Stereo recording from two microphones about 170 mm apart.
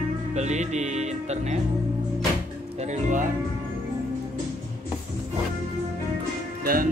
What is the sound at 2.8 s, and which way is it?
Speech, 45° right (ahead or behind).